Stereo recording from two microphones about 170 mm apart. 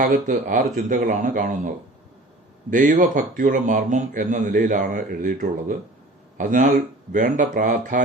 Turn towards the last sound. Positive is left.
turn(degrees=-50)  # may be behind; listen again after turning